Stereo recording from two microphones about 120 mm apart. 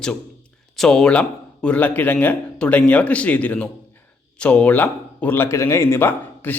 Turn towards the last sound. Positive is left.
turn(degrees=15)  # may be behind; listen again after turning